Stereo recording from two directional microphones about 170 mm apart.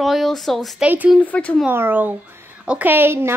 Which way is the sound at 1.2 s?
10° left (ahead or behind).